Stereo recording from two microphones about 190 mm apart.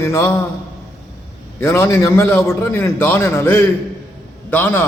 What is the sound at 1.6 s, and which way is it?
A man's voice, 15° left (ahead or behind).